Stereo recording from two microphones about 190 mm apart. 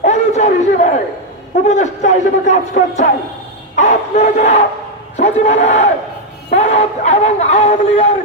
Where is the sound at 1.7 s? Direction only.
40° left (ahead or behind).